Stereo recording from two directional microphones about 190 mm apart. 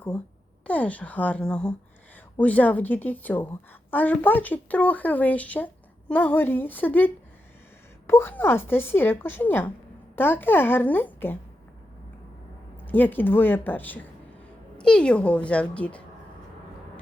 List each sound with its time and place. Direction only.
0.7 s speech: 10° left (ahead or behind)
12.7 s speech: 10° left (ahead or behind)